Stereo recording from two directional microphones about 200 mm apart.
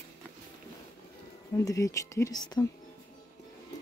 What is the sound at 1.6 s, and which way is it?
Speech, 15° left (ahead or behind).